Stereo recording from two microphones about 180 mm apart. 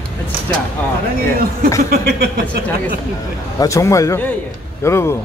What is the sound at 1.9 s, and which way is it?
Speech, 60° right (ahead or behind).